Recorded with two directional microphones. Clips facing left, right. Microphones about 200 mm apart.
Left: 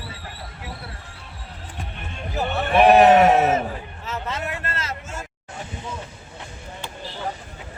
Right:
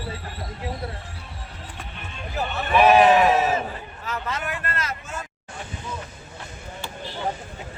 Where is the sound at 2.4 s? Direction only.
55° left (ahead or behind).